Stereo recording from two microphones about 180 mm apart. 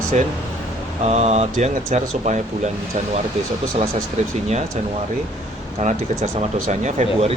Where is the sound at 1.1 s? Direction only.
35° right (ahead or behind).